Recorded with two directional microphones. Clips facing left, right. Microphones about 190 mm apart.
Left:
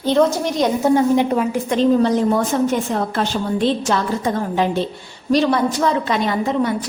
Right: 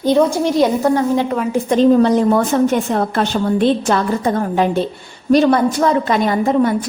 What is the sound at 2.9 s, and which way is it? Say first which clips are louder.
A woman's voice: right 3 dB; 55° right (ahead or behind).